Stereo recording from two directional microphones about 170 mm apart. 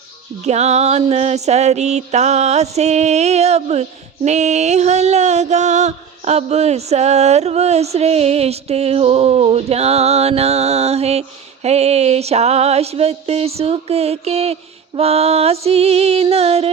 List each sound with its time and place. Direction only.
0.4 s music: 40° right (ahead or behind)